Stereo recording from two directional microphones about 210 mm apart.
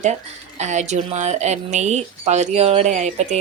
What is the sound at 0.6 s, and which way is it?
A woman's voice, 35° right (ahead or behind).